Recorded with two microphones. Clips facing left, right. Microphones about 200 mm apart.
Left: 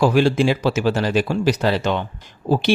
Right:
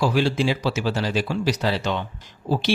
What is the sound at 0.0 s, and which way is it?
Speech, 50° left (ahead or behind).